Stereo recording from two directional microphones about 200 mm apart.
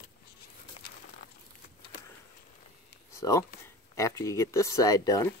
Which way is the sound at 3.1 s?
15° left (ahead or behind).